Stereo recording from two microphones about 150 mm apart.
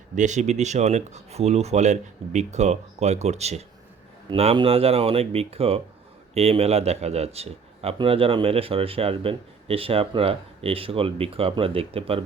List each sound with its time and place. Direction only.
0.2 s speech: 50° right (ahead or behind)
4.3 s speech: 35° right (ahead or behind)